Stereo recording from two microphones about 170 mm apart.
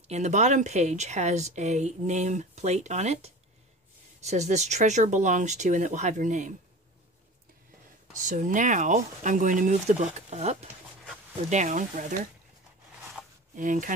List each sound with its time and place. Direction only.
0.1 s speech: 45° right (ahead or behind)
8.2 s speech: 50° right (ahead or behind)
13.6 s speech: 50° right (ahead or behind)